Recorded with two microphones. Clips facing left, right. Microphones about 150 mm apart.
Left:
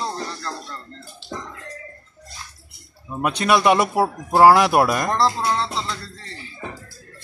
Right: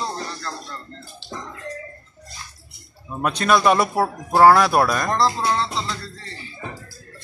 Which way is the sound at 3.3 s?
10° left (ahead or behind).